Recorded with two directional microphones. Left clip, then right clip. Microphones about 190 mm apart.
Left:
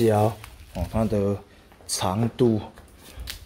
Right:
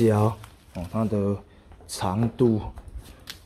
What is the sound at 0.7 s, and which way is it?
Speech, 10° left (ahead or behind).